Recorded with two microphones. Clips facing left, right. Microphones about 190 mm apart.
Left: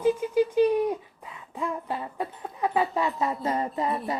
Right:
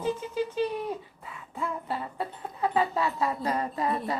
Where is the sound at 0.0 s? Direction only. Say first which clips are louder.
Left 7 dB; 15° left (ahead or behind).